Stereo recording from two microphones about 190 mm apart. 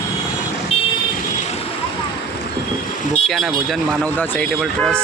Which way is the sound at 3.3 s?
Centre (ahead or behind).